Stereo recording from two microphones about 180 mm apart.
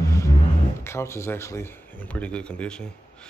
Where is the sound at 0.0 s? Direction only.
15° left (ahead or behind).